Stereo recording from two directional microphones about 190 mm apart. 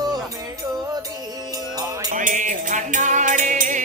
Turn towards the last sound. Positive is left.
turn(degrees=-40)  # may be behind; listen again after turning